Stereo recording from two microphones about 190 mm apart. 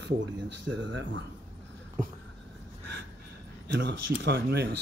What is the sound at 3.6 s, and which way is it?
Speech, 65° right (ahead or behind).